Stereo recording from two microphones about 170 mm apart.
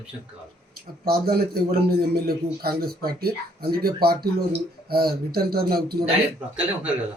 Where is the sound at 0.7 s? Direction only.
65° right (ahead or behind).